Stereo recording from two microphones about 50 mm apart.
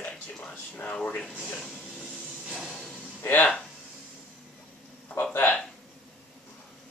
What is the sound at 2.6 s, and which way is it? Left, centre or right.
Music, centre.